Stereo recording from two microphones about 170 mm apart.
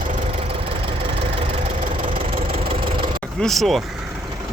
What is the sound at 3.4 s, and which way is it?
Speech, centre (ahead or behind).